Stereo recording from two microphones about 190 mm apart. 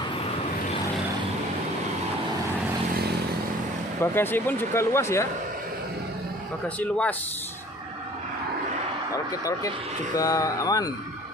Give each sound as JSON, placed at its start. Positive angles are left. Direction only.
{"t": 4.0, "sound": "speech", "side_deg": 10}
{"t": 6.8, "sound": "speech", "side_deg": 10}
{"t": 9.1, "sound": "speech", "side_deg": 15}